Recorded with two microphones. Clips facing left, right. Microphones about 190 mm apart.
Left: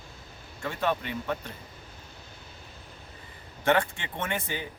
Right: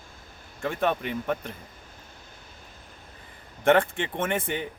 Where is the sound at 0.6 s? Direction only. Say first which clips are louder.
Right 3 dB; 50° right (ahead or behind).